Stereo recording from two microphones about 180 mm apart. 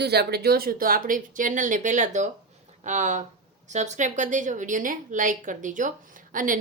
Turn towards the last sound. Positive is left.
turn(degrees=-50)  # may be behind; listen again after turning